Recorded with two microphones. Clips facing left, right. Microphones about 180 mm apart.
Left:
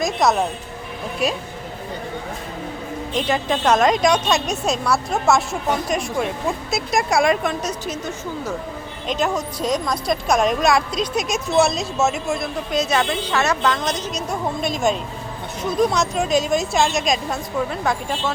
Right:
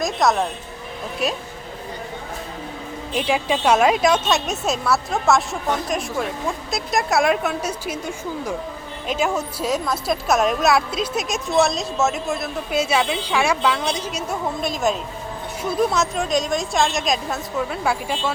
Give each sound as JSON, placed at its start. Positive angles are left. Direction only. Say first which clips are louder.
{"t": 0.0, "sound": "speech", "louder": "left 1 dB", "side_deg": 0}
{"t": 3.2, "sound": "speech", "louder": "even", "side_deg": -10}